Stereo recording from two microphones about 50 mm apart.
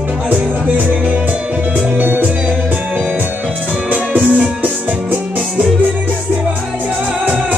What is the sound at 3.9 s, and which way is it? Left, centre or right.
Music, right.